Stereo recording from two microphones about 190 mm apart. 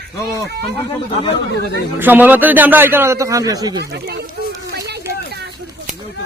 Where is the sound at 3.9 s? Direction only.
60° right (ahead or behind).